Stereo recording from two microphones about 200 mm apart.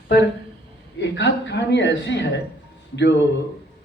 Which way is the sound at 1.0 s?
60° left (ahead or behind).